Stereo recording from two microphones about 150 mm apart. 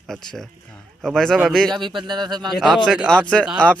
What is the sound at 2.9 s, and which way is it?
Speech, 5° left (ahead or behind).